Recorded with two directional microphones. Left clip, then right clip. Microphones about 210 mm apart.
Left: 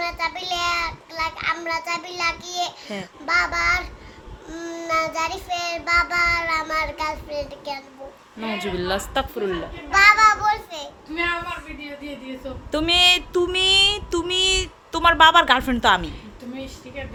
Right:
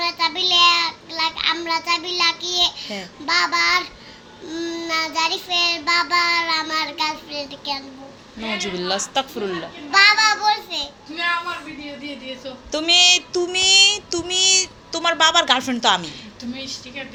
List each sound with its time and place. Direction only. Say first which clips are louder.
0.0 s child singing: right 5 dB; 15° left (ahead or behind)
12.7 s child singing: right 2 dB; 15° left (ahead or behind)